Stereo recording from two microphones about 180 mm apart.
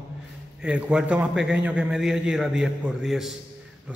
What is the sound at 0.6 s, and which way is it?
A man's voice, 5° right (ahead or behind).